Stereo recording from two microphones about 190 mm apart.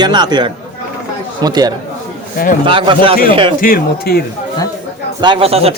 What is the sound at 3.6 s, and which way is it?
Speech, 50° left (ahead or behind).